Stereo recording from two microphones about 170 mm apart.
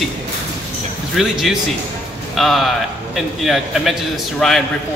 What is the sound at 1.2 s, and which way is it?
Speech, centre (ahead or behind).